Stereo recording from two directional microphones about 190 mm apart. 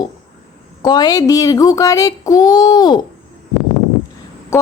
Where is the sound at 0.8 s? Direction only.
20° left (ahead or behind).